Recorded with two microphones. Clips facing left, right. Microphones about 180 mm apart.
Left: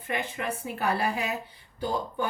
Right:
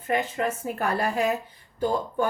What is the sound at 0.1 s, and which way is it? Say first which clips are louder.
Speech: right 6 dB; 40° right (ahead or behind).